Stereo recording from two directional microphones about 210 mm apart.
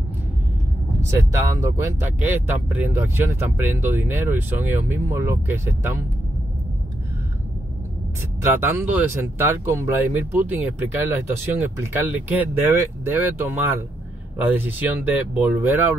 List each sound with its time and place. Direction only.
1.1 s speech: 15° right (ahead or behind)
8.4 s speech: 10° right (ahead or behind)